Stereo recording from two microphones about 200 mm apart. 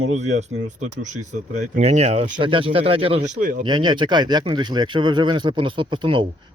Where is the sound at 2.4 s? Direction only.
25° right (ahead or behind).